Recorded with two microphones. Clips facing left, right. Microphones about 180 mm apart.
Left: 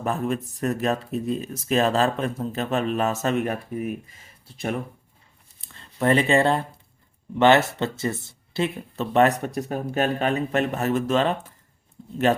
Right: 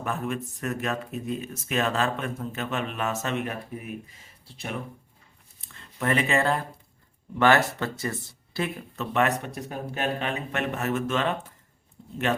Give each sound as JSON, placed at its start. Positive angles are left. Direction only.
{"t": 0.0, "sound": "speech", "side_deg": 35}
{"t": 5.5, "sound": "a sound", "side_deg": 30}
{"t": 7.3, "sound": "a man's voice", "side_deg": 25}